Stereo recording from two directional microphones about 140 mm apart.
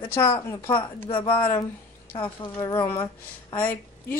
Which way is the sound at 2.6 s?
15° left (ahead or behind).